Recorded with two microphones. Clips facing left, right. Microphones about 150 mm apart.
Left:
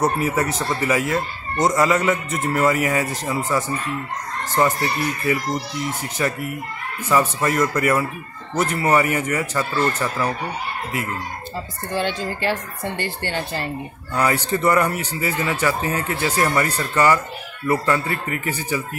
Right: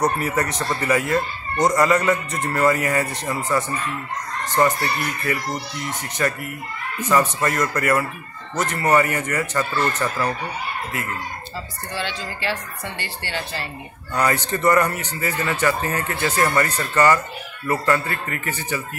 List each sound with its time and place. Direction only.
0.0 s speech: 5° left (ahead or behind)
6.2 s speech: 10° left (ahead or behind)
11.9 s speech: 50° left (ahead or behind)
14.1 s speech: 10° left (ahead or behind)